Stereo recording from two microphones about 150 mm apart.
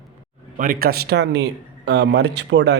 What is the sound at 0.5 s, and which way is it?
Speech, 70° right (ahead or behind).